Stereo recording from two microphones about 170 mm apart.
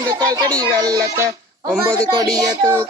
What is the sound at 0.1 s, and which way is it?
Speech, 25° right (ahead or behind).